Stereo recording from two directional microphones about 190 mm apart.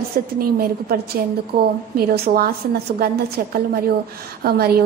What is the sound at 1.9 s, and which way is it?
Speech, 55° right (ahead or behind).